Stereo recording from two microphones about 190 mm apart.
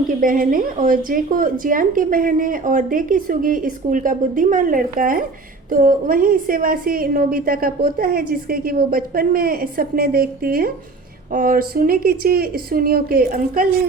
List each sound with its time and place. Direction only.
0.1 s a woman's voice: 45° right (ahead or behind)